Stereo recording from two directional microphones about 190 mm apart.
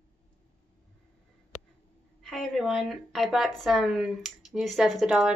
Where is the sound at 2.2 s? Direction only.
Centre (ahead or behind).